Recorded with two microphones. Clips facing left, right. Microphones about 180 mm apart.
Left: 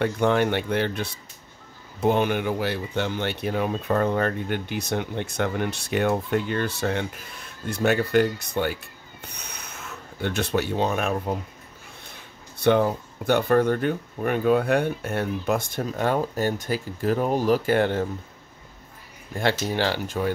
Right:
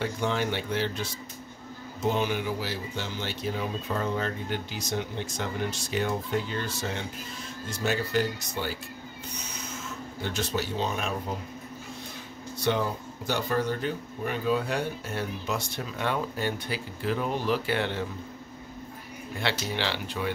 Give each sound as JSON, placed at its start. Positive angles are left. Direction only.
{"t": 0.0, "sound": "speech", "side_deg": 60}
{"t": 9.3, "sound": "a sound", "side_deg": 60}
{"t": 12.5, "sound": "speech", "side_deg": 55}
{"t": 19.3, "sound": "speech", "side_deg": 45}